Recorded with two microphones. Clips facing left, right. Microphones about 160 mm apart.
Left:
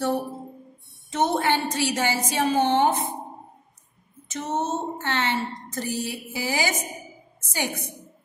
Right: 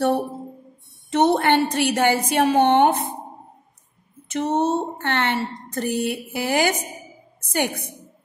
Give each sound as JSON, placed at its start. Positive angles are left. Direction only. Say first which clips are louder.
{"t": 1.1, "sound": "speech", "louder": "right 5 dB", "side_deg": -65}
{"t": 4.3, "sound": "a woman's voice", "louder": "right 6 dB", "side_deg": -60}